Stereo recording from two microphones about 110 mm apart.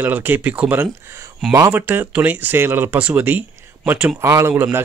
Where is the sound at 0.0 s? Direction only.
15° right (ahead or behind).